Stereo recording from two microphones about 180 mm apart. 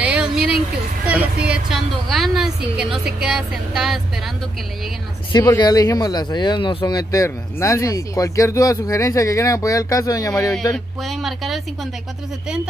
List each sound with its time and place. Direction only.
0.0 s a sound: 5° right (ahead or behind)
1.0 s a woman's voice: 10° right (ahead or behind)
5.3 s speech: 20° left (ahead or behind)
11.0 s a woman's voice: centre (ahead or behind)